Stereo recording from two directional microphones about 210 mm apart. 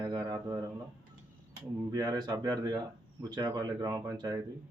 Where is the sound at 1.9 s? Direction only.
20° right (ahead or behind).